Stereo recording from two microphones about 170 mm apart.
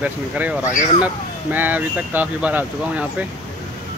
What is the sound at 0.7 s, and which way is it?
Speech, 45° left (ahead or behind).